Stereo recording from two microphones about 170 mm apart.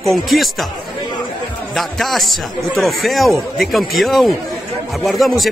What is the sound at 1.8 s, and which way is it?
A man's voice, centre (ahead or behind).